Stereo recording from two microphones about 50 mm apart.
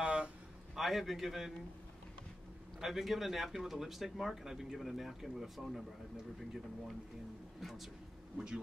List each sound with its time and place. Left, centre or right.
0.0 s a sound: right
0.7 s speech: centre
2.8 s speech: centre
7.6 s speech: centre